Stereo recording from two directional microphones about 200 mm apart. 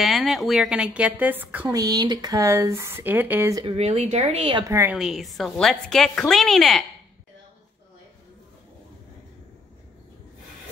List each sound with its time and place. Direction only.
0.0 s a woman's voice: centre (ahead or behind)
3.6 s speech: 30° right (ahead or behind); by 4.9 s 15° right (ahead or behind)
4.9 s a woman's voice: centre (ahead or behind)